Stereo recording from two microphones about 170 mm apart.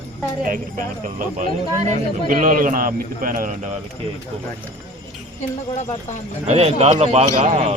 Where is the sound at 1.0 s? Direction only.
50° right (ahead or behind).